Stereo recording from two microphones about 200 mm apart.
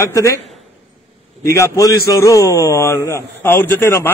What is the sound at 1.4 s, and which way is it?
A man's voice, 15° left (ahead or behind).